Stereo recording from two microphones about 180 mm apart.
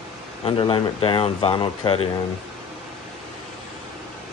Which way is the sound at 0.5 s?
30° left (ahead or behind).